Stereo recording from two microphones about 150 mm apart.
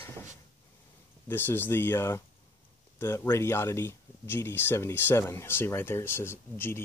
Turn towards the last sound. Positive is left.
turn(degrees=15)  # may be behind; listen again after turning